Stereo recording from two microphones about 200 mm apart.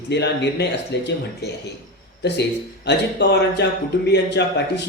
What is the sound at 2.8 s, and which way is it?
A man's voice, 55° left (ahead or behind).